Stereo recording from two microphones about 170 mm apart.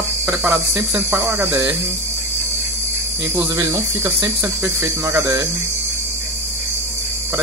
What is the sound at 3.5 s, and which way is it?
Speech, 15° right (ahead or behind).